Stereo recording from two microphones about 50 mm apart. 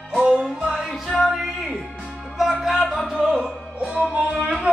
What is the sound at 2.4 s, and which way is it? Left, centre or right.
Music, centre.